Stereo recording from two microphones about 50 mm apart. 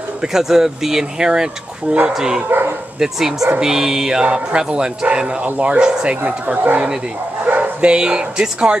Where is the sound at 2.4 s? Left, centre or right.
Right.